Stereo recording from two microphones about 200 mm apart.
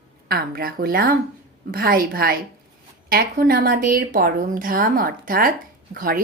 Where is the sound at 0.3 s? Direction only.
50° right (ahead or behind).